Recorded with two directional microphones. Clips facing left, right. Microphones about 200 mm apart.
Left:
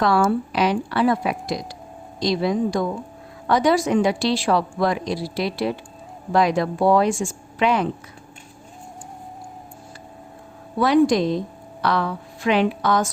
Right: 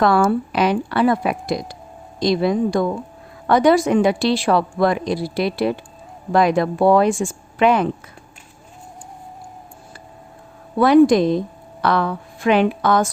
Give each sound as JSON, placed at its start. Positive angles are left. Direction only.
{"t": 0.0, "sound": "a woman's voice", "side_deg": -55}
{"t": 10.8, "sound": "a woman's voice", "side_deg": -55}